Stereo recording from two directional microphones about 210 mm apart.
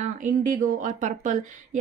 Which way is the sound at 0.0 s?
40° right (ahead or behind).